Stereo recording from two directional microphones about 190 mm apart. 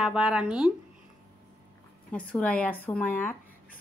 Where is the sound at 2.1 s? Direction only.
5° left (ahead or behind).